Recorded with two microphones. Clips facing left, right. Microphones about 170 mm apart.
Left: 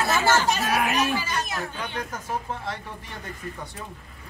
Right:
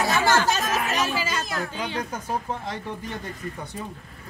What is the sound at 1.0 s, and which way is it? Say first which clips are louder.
Speech: left 1 dB; 90° right.